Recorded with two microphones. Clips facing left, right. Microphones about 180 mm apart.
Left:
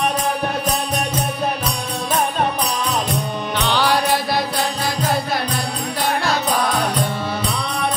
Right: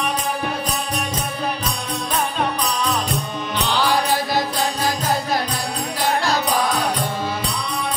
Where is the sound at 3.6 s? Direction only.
65° left (ahead or behind).